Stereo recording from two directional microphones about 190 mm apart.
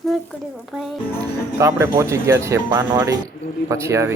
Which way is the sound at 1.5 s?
15° right (ahead or behind).